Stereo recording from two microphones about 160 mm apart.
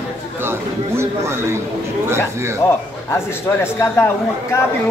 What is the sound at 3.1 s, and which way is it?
Speech, 15° left (ahead or behind).